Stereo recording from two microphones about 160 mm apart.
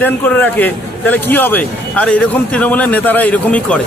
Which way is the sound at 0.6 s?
10° left (ahead or behind).